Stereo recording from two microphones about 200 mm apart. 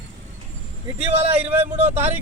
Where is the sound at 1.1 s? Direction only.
30° right (ahead or behind).